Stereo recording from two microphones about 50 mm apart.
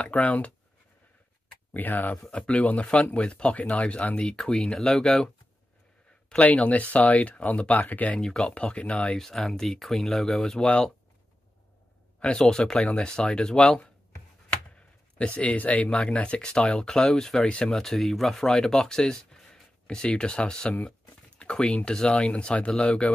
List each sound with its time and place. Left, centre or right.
0.0 s speech: left
1.7 s speech: left
2.3 s speech: left
6.4 s speech: left
8.2 s speech: centre
9.2 s speech: centre
12.4 s speech: centre